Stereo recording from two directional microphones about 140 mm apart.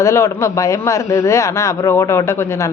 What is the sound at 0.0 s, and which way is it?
A man's voice, 20° left (ahead or behind).